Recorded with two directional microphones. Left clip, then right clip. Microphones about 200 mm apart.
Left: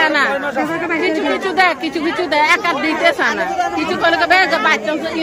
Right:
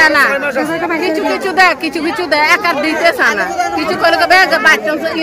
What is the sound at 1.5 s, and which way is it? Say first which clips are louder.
Speech: right 5 dB; 20° right (ahead or behind).